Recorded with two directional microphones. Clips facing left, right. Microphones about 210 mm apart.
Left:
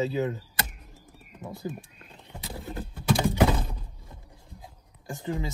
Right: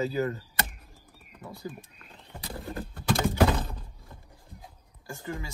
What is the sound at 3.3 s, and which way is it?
Typing, 15° left (ahead or behind).